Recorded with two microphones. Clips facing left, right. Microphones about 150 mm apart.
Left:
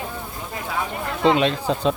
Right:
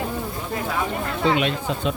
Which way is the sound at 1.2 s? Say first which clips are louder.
Left 4 dB; 30° left (ahead or behind).